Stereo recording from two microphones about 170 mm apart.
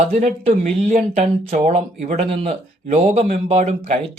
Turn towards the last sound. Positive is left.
turn(degrees=-40)  # may be behind; listen again after turning